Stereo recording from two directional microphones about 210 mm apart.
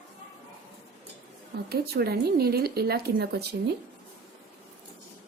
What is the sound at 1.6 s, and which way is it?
Speech, 50° right (ahead or behind).